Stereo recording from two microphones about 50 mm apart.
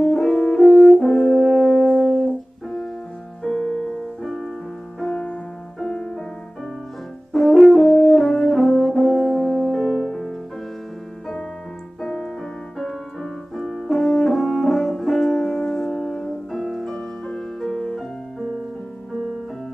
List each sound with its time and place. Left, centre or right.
0.0 s music: centre
0.9 s french horn: centre
3.4 s music: centre
5.0 s music: left
7.3 s french horn: centre
8.0 s brass instrument: centre
9.2 s music: centre
12.0 s music: centre